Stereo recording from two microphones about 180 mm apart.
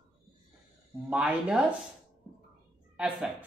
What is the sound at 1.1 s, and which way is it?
Speech, 5° right (ahead or behind).